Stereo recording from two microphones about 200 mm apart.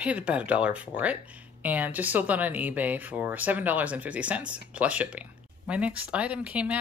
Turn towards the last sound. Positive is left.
turn(degrees=-5)  # may be behind; listen again after turning